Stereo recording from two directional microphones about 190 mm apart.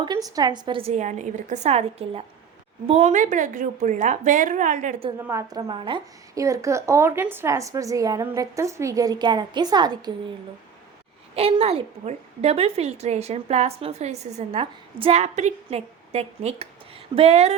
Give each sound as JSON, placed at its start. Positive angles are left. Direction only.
{"t": 0.0, "sound": "a woman's voice", "side_deg": -20}
{"t": 5.1, "sound": "a woman's voice", "side_deg": -15}
{"t": 11.3, "sound": "a woman's voice", "side_deg": -30}